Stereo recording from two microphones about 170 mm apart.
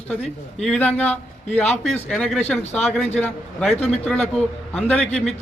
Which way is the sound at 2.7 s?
40° left (ahead or behind).